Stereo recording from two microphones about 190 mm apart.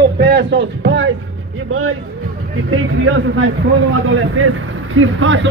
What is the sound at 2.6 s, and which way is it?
A man's voice, 90° right.